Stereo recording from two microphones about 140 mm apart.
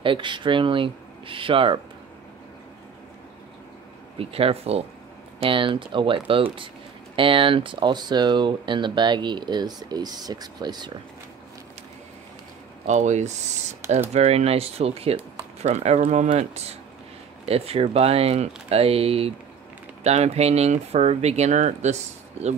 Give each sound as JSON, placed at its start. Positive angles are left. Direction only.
{"t": 0.0, "sound": "speech", "side_deg": -35}
{"t": 4.2, "sound": "speech", "side_deg": -45}
{"t": 12.8, "sound": "speech", "side_deg": -55}